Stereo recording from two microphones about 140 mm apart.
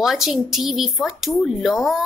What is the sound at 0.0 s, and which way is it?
A woman's voice, 5° right (ahead or behind).